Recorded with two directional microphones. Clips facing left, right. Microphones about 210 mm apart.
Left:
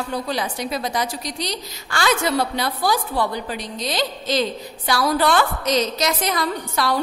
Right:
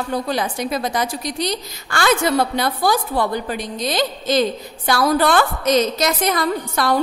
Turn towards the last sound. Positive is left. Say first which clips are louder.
# right 3 dB
turn(degrees=-50)  # may be behind; listen again after turning